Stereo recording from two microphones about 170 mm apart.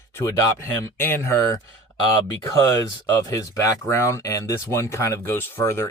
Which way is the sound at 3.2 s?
20° left (ahead or behind).